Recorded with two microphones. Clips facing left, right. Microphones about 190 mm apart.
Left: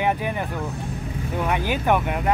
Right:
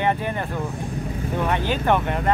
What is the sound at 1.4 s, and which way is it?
Speech, 10° left (ahead or behind).